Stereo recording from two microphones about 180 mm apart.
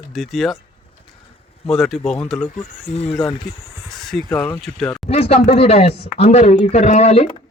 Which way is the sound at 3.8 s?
Centre (ahead or behind).